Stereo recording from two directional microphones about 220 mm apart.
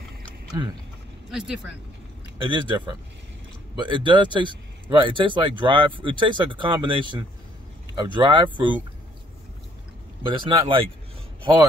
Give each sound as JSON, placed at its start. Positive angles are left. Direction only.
{"t": 1.3, "sound": "speech", "side_deg": 0}
{"t": 2.4, "sound": "speech", "side_deg": -20}
{"t": 10.2, "sound": "speech", "side_deg": -20}